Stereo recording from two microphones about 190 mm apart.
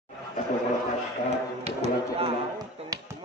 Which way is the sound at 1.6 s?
30° right (ahead or behind).